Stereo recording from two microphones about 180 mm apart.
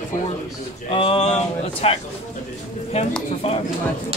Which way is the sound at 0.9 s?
30° left (ahead or behind).